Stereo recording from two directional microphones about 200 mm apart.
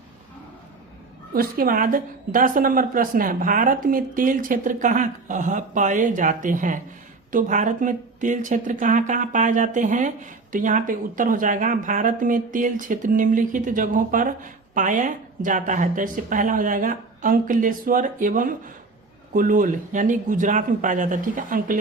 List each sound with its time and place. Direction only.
1.3 s a woman's voice: 45° right (ahead or behind)